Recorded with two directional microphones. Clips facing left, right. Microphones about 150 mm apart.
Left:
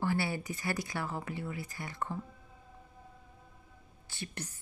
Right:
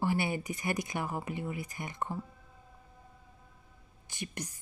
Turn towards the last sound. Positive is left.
turn(degrees=-15)  # may be behind; listen again after turning